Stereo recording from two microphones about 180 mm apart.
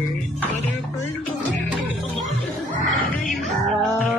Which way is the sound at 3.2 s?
5° left (ahead or behind).